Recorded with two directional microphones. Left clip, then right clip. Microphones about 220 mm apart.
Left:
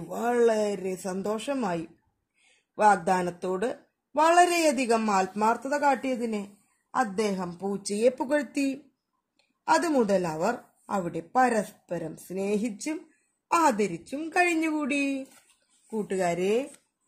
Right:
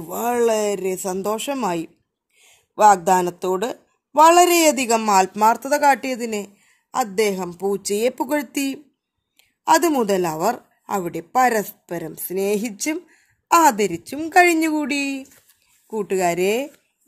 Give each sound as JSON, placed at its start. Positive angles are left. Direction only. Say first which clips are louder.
{"t": 0.1, "sound": "a woman's voice", "louder": "right 5 dB", "side_deg": -45}